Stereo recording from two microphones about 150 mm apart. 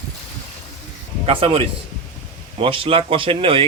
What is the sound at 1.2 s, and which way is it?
A man's voice, 40° right (ahead or behind).